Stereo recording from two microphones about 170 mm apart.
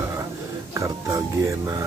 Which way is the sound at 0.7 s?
20° right (ahead or behind).